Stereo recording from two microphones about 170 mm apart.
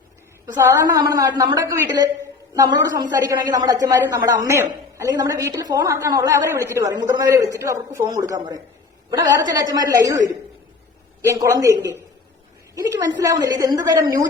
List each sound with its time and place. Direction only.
0.4 s a woman's voice: 20° right (ahead or behind)